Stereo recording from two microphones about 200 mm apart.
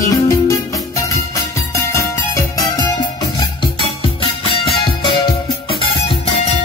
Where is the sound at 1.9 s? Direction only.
15° left (ahead or behind).